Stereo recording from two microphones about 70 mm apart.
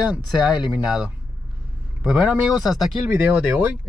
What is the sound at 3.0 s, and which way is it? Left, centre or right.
Speech, right.